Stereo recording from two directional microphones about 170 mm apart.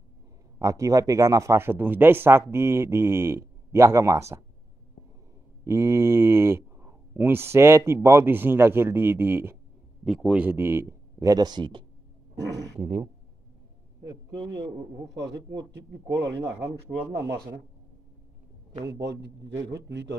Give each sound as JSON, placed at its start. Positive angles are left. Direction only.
{"t": 0.6, "sound": "speech", "side_deg": -20}
{"t": 5.6, "sound": "speech", "side_deg": -15}
{"t": 12.8, "sound": "speech", "side_deg": -40}
{"t": 14.0, "sound": "a man's voice", "side_deg": -25}
{"t": 15.1, "sound": "speech", "side_deg": -90}
{"t": 16.3, "sound": "speech", "side_deg": -15}
{"t": 18.9, "sound": "a man's voice", "side_deg": -85}